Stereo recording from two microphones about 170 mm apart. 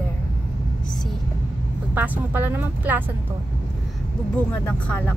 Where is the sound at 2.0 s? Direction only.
10° right (ahead or behind).